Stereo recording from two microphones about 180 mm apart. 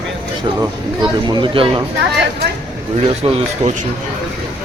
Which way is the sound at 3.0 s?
35° right (ahead or behind).